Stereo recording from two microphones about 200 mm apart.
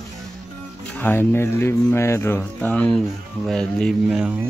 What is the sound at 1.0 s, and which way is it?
A man's voice, 10° left (ahead or behind).